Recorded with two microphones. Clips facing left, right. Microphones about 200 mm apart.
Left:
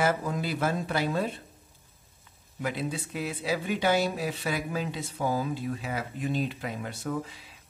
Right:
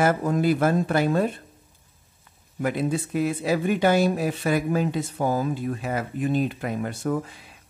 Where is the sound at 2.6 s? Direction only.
50° right (ahead or behind).